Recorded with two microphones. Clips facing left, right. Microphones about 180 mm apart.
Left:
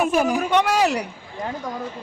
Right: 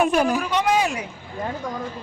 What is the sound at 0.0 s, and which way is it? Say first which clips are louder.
Speech: right 1 dB; 5° left (ahead or behind).